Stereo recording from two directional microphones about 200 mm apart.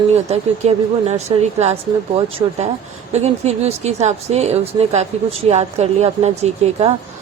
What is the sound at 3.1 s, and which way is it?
Speech, 35° right (ahead or behind).